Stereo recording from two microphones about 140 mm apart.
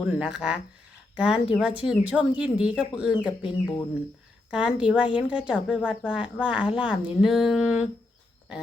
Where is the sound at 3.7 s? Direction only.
20° left (ahead or behind).